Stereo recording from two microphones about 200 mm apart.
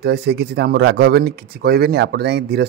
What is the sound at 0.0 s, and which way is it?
A man's voice, 55° right (ahead or behind).